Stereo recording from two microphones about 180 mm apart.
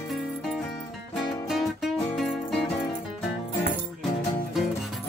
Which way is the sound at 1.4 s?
Centre (ahead or behind).